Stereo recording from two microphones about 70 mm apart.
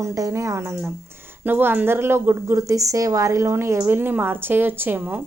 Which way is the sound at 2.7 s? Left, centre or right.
Right.